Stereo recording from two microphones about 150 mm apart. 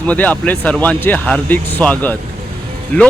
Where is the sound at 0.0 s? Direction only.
10° left (ahead or behind).